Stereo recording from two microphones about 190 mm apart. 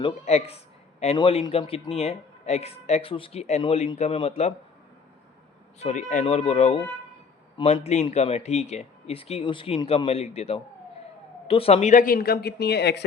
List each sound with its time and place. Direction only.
0.0 s speech: 35° left (ahead or behind)
5.8 s speech: 40° left (ahead or behind); by 13.1 s 60° left (ahead or behind)